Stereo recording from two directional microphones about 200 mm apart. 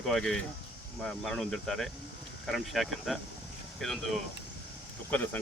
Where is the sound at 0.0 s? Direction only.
Centre (ahead or behind).